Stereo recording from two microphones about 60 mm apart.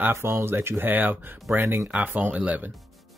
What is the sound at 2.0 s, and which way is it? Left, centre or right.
Speech, right.